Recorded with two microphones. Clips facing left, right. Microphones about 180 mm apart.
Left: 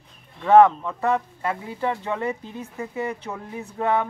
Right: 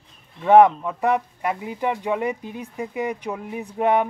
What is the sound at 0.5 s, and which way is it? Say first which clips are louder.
Speech: right 1 dB; 15° right (ahead or behind).